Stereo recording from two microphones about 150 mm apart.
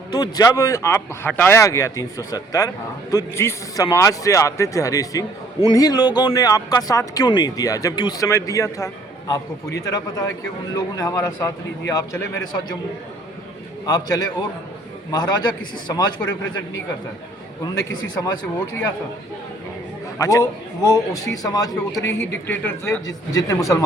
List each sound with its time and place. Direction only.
0.1 s speech: 25° left (ahead or behind)
13.8 s speech: 25° left (ahead or behind)
17.6 s speech: 25° left (ahead or behind)
20.1 s speech: 20° left (ahead or behind)